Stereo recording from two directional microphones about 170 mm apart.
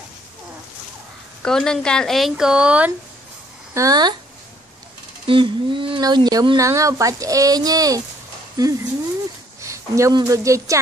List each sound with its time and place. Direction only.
1.4 s speech: 5° left (ahead or behind)
3.7 s speech: 20° right (ahead or behind)
5.2 s a woman's voice: 30° right (ahead or behind)